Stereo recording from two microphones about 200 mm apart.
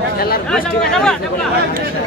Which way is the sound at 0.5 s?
5° left (ahead or behind).